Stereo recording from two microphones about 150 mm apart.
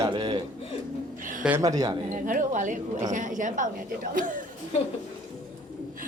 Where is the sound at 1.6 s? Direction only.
25° right (ahead or behind).